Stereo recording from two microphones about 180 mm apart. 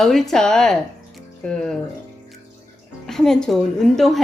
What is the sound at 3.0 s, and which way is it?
A woman's voice, centre (ahead or behind).